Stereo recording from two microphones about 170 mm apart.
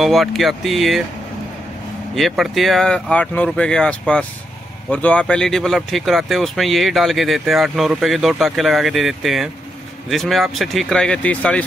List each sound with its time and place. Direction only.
0.0 s speech: centre (ahead or behind)
2.1 s speech: centre (ahead or behind)